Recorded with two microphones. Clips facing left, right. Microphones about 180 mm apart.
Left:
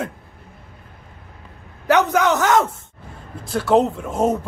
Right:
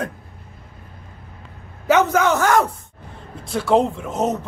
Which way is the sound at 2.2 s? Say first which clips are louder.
Even; 20° left (ahead or behind).